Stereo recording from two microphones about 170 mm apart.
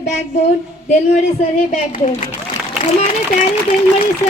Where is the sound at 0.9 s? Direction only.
45° left (ahead or behind).